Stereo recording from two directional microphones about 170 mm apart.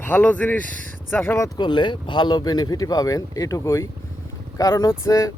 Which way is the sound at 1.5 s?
25° left (ahead or behind).